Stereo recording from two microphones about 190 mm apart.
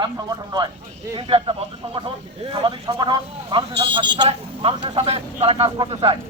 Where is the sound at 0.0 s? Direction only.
20° right (ahead or behind).